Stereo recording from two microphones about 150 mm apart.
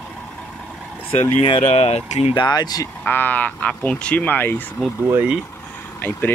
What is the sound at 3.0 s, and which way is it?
Speech, 10° left (ahead or behind).